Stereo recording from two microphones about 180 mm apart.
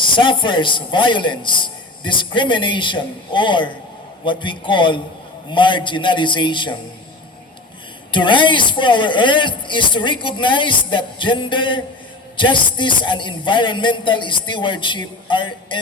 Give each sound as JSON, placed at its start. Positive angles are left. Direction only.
{"t": 0.0, "sound": "speech", "side_deg": 25}
{"t": 8.1, "sound": "speech", "side_deg": 25}